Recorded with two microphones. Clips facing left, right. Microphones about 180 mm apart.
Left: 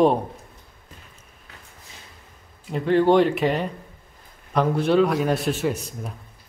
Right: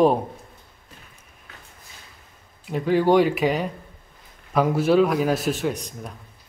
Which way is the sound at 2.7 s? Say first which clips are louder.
Left 1 dB; 5° right (ahead or behind).